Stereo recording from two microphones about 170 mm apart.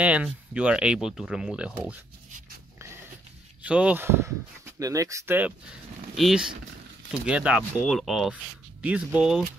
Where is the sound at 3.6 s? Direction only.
5° right (ahead or behind).